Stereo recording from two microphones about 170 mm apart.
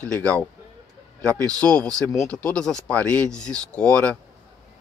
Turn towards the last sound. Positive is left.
turn(degrees=5)  # may be behind; listen again after turning